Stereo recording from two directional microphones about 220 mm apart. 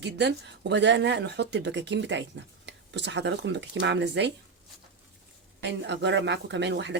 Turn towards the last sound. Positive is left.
turn(degrees=-50)  # may be behind; listen again after turning